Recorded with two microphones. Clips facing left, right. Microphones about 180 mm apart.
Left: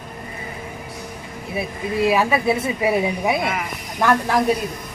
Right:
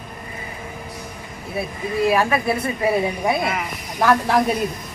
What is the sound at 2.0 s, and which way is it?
Speech, centre (ahead or behind).